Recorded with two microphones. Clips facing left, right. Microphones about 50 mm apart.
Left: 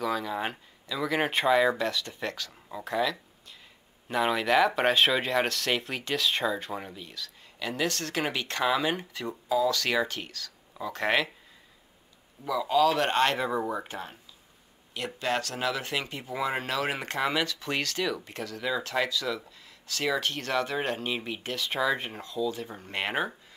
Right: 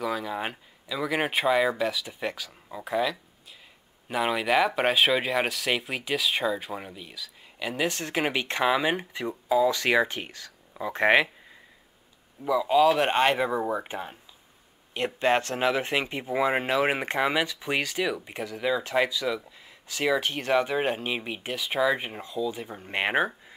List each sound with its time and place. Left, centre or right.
0.0 s speech: centre; by 11.2 s right
12.4 s speech: centre
15.0 s speech: right